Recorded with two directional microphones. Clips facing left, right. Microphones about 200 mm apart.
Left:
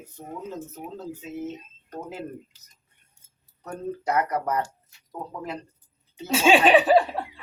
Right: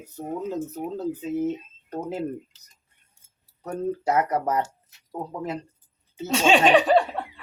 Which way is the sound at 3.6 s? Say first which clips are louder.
Right 4 dB; 25° right (ahead or behind).